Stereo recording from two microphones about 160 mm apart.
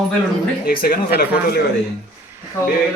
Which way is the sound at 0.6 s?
65° left (ahead or behind).